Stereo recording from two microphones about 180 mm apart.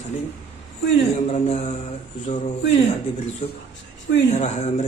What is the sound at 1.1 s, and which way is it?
Speech, 40° left (ahead or behind).